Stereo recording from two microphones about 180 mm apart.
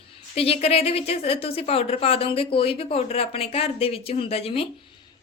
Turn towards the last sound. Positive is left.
turn(degrees=30)  # may be behind; listen again after turning